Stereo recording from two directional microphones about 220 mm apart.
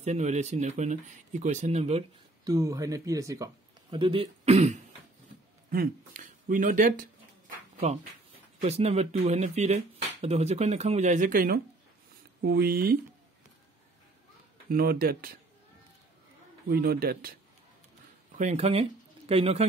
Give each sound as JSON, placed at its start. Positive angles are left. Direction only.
{"t": 0.0, "sound": "speech", "side_deg": -30}
{"t": 2.4, "sound": "speech", "side_deg": -15}
{"t": 5.7, "sound": "a sound", "side_deg": -40}
{"t": 8.5, "sound": "a man's voice", "side_deg": -30}
{"t": 14.7, "sound": "a man's voice", "side_deg": -45}
{"t": 16.6, "sound": "a man's voice", "side_deg": -45}
{"t": 18.4, "sound": "speech", "side_deg": -30}